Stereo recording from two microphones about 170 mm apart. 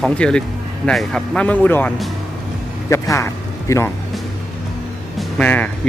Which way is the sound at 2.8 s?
20° left (ahead or behind).